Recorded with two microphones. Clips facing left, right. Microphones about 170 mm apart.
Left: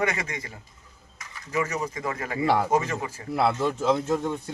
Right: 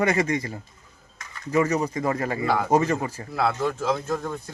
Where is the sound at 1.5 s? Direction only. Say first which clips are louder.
Right 6 dB; 35° right (ahead or behind).